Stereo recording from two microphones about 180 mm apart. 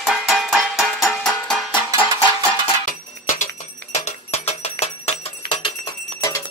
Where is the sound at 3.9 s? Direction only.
40° left (ahead or behind).